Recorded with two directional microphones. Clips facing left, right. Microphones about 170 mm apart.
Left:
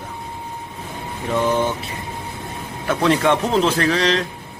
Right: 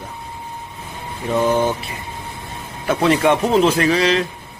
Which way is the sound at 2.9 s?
10° right (ahead or behind).